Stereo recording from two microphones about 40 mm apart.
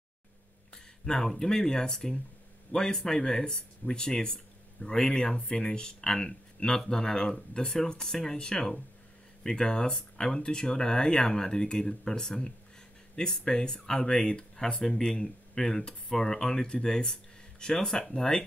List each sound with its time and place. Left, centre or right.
1.0 s speech: centre
14.8 s speech: centre